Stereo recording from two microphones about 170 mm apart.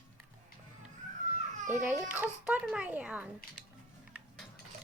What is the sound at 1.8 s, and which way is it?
A child's voice, 10° right (ahead or behind).